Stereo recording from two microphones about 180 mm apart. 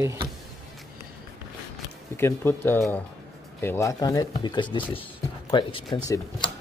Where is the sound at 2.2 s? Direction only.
15° left (ahead or behind).